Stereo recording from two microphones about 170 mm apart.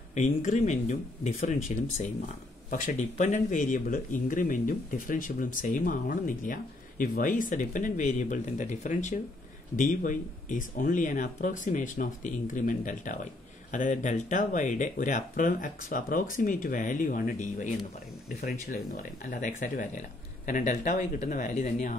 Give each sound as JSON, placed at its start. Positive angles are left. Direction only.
{"t": 0.1, "sound": "speech", "side_deg": 45}
{"t": 18.4, "sound": "speech", "side_deg": 60}